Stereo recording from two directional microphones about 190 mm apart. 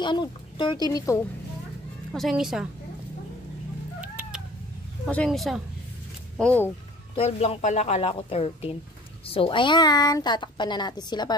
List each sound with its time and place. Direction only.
0.0 s a woman's voice: 25° left (ahead or behind)
2.1 s a woman's voice: centre (ahead or behind)
4.0 s cat: 5° right (ahead or behind)
5.0 s a woman's voice: 5° left (ahead or behind)
7.2 s a woman's voice: 35° left (ahead or behind)